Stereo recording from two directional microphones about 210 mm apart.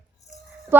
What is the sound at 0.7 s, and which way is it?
Jingle bell, 10° right (ahead or behind).